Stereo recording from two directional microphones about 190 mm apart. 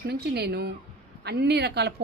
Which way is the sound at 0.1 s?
60° right (ahead or behind).